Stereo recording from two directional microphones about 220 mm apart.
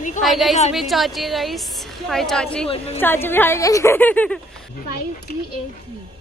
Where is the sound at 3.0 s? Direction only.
10° left (ahead or behind).